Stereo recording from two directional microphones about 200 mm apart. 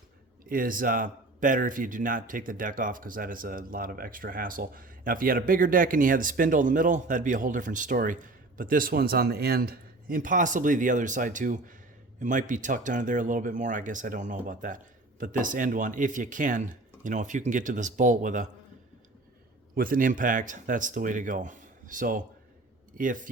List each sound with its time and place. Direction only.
0.4 s a man's voice: 45° right (ahead or behind)
19.7 s speech: 45° right (ahead or behind)